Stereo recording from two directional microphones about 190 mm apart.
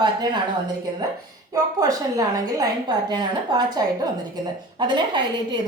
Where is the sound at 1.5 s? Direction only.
20° right (ahead or behind).